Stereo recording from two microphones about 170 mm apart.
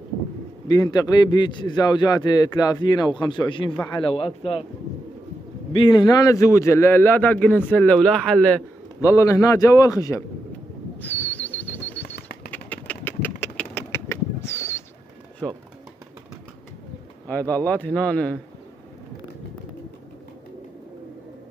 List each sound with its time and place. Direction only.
0.7 s a man's voice: 20° left (ahead or behind)
5.7 s a man's voice: 30° left (ahead or behind); by 8.6 s 5° left (ahead or behind)
9.0 s a man's voice: 20° left (ahead or behind)
11.0 s a sound: 10° left (ahead or behind)
17.3 s a man's voice: 10° left (ahead or behind)